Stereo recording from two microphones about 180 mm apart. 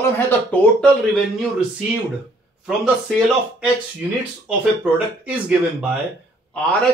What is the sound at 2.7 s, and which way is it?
Speech, 5° right (ahead or behind).